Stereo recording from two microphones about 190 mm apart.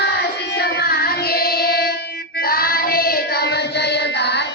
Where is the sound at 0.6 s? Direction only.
55° left (ahead or behind).